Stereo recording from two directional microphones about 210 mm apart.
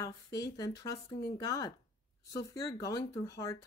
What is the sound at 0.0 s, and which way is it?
Speech, 15° left (ahead or behind).